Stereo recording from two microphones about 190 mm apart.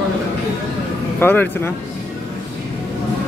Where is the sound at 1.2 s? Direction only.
10° left (ahead or behind).